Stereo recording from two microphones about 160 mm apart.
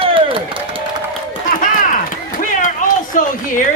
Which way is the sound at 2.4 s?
55° left (ahead or behind).